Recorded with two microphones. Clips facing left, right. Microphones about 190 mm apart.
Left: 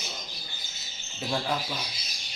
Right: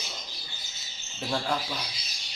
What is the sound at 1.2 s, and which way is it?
Speech, centre (ahead or behind).